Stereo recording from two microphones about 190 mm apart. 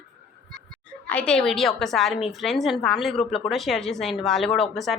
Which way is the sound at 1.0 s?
5° left (ahead or behind).